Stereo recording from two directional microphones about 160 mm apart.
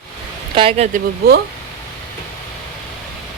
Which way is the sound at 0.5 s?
40° right (ahead or behind).